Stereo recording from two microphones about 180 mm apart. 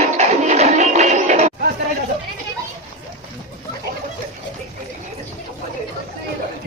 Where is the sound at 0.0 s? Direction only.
40° right (ahead or behind).